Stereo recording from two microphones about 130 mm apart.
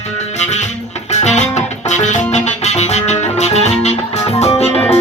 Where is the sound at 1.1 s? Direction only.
60° left (ahead or behind).